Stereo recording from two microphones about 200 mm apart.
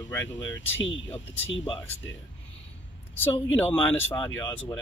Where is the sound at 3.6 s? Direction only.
5° left (ahead or behind).